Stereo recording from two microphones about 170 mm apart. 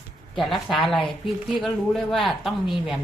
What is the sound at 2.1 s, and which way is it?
Speech, centre (ahead or behind).